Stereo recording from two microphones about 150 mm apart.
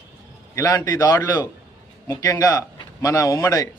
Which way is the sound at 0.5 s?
25° left (ahead or behind).